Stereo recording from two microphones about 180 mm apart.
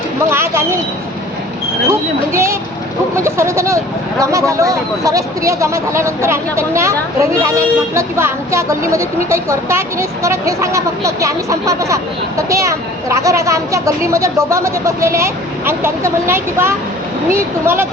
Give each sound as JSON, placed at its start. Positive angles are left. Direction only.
{"t": 0.3, "sound": "speech", "side_deg": -15}
{"t": 1.9, "sound": "speech", "side_deg": -15}